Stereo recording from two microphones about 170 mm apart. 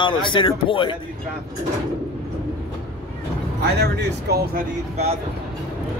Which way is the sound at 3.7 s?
70° right (ahead or behind).